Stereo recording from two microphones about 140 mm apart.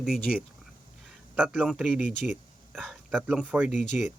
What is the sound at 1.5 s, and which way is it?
Speech, centre (ahead or behind).